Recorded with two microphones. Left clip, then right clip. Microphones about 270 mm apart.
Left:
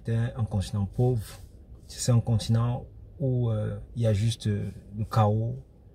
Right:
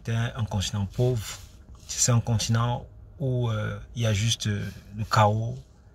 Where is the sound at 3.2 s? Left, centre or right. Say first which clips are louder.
Even; centre.